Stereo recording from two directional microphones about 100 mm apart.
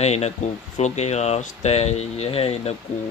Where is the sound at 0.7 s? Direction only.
90° left.